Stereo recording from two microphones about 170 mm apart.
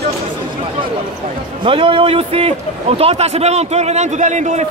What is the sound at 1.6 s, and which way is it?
A man's voice, 30° right (ahead or behind).